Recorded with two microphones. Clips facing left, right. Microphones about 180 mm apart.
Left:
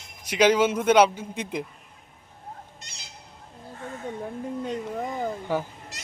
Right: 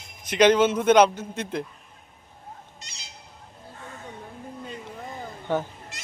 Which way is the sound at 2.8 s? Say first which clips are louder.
Even; 55° left (ahead or behind).